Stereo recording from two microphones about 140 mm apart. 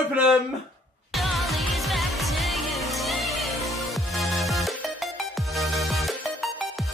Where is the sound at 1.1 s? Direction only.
Centre (ahead or behind).